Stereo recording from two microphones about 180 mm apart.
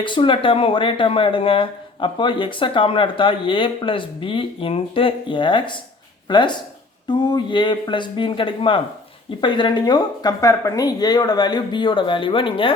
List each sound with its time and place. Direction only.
0.0 s speech: 25° left (ahead or behind)